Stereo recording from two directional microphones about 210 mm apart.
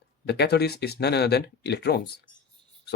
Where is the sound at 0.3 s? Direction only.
50° left (ahead or behind).